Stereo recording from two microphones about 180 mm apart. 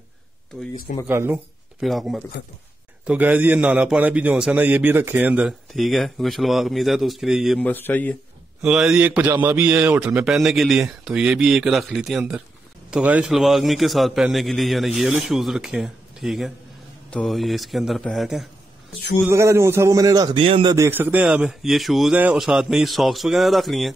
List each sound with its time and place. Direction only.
1.0 s a man's voice: 10° right (ahead or behind)
1.8 s a man's voice: centre (ahead or behind)
8.6 s a man's voice: 5° right (ahead or behind)
19.2 s a man's voice: 15° right (ahead or behind)
20.7 s a man's voice: 15° right (ahead or behind)